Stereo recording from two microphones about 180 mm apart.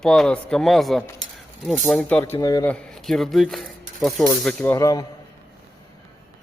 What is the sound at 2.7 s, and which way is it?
Speech, 5° left (ahead or behind).